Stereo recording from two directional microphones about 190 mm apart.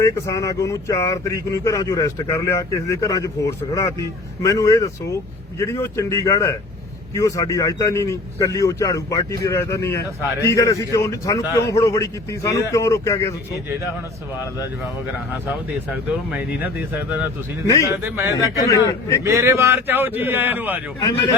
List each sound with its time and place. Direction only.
0.0 s speech: 15° left (ahead or behind)
16.3 s speech: 10° right (ahead or behind)
18.3 s speech: 15° left (ahead or behind)
19.2 s speech: 15° right (ahead or behind)